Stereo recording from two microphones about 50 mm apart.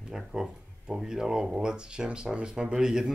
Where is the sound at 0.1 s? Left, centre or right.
Centre.